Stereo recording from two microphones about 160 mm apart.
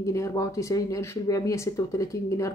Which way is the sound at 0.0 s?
20° left (ahead or behind).